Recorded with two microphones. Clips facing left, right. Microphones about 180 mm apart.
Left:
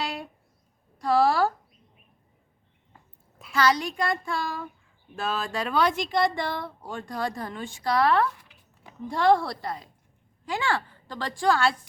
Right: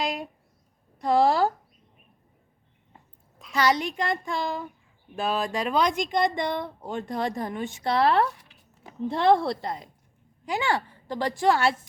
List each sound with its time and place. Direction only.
0.9 s speech: 20° right (ahead or behind)
3.5 s speech: 20° right (ahead or behind)